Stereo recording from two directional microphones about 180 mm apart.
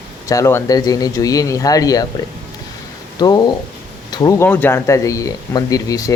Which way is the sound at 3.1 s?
20° left (ahead or behind).